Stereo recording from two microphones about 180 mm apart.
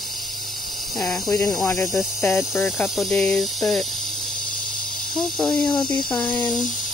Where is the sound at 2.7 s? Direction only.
Centre (ahead or behind).